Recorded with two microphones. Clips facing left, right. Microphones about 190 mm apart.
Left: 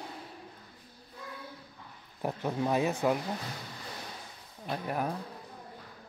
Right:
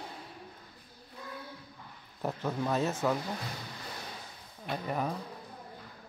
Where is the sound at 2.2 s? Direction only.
15° left (ahead or behind).